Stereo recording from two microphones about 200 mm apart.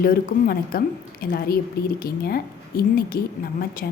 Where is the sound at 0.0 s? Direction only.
45° left (ahead or behind).